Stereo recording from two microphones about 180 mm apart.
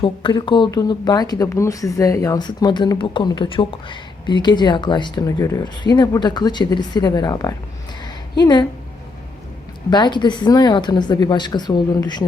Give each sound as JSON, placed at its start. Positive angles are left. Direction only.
{"t": 0.0, "sound": "speech", "side_deg": 25}
{"t": 9.9, "sound": "speech", "side_deg": 25}